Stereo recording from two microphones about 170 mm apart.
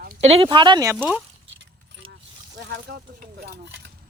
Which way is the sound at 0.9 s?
10° right (ahead or behind).